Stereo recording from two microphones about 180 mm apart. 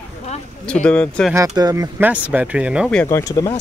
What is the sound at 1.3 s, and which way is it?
Speech, 20° right (ahead or behind).